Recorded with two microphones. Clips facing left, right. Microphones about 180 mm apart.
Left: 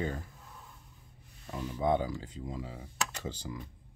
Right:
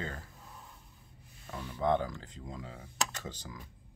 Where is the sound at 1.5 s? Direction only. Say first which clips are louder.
Left 1 dB; 15° left (ahead or behind).